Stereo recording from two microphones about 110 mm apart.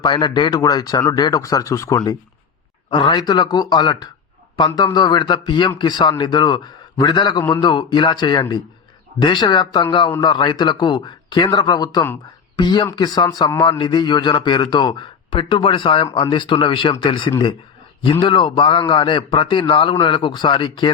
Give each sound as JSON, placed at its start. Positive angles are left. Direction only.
{"t": 0.0, "sound": "a man's voice", "side_deg": 45}
{"t": 2.9, "sound": "a man's voice", "side_deg": 45}